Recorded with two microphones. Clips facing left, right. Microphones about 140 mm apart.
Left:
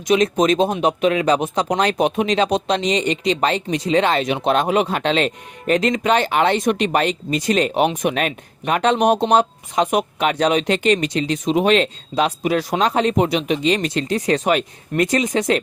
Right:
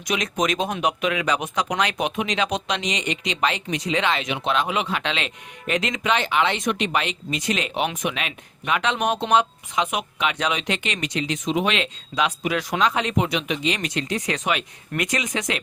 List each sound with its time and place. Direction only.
0.1 s speech: 30° left (ahead or behind)